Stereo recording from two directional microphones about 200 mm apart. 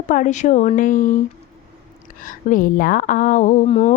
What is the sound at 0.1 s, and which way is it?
A woman's voice, 40° left (ahead or behind).